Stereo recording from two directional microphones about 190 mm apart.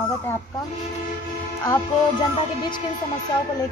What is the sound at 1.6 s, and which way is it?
Speech, 20° left (ahead or behind).